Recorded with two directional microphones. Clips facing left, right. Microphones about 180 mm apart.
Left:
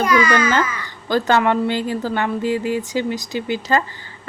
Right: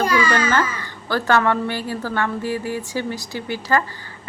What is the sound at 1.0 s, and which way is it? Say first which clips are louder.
A woman's voice: left 2 dB; 15° left (ahead or behind).